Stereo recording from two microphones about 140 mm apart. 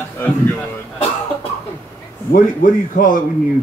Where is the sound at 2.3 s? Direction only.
75° left (ahead or behind).